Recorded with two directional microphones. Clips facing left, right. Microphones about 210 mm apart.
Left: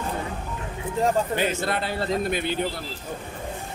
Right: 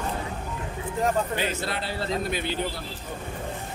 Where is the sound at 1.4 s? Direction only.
50° left (ahead or behind).